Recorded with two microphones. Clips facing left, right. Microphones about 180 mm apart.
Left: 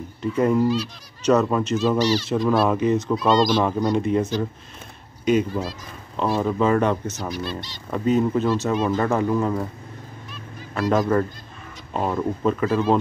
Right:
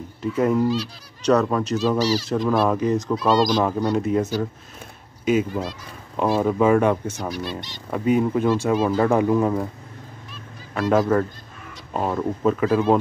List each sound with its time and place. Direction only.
0.2 s speech: centre (ahead or behind)
2.3 s speech: 15° right (ahead or behind)
2.7 s speech: 5° left (ahead or behind)
10.9 s speech: 5° right (ahead or behind)